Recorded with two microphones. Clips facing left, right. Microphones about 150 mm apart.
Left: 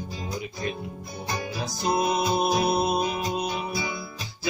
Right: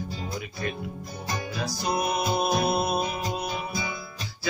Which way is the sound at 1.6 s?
25° left (ahead or behind).